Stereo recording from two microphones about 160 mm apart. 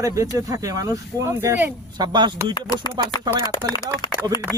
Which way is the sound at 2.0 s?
30° right (ahead or behind).